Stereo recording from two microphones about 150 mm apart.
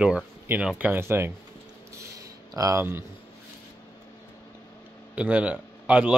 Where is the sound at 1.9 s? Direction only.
20° right (ahead or behind).